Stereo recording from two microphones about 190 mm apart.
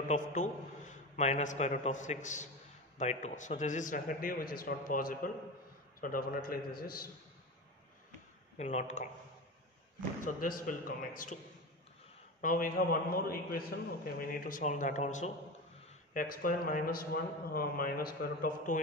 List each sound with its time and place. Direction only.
0.1 s a man's voice: 40° left (ahead or behind)
8.5 s a man's voice: 35° left (ahead or behind)
10.2 s a man's voice: 45° left (ahead or behind)
12.4 s a man's voice: 45° left (ahead or behind)